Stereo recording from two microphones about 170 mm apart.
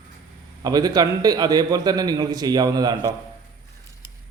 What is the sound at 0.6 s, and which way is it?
A man's voice, 25° right (ahead or behind).